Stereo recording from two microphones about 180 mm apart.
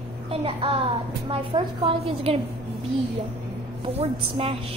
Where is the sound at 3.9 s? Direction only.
30° right (ahead or behind).